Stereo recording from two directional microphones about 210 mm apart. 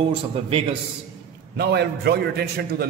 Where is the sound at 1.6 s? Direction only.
50° right (ahead or behind).